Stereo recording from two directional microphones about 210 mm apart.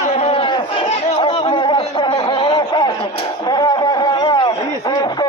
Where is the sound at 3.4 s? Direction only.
20° left (ahead or behind).